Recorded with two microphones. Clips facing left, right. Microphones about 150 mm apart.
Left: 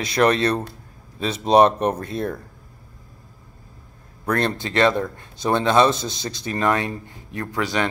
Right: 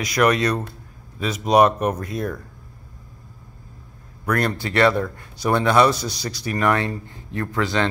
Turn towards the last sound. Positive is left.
turn(degrees=15)  # may be behind; listen again after turning